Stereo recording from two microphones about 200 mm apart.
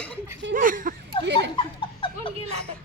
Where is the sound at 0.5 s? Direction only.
45° right (ahead or behind).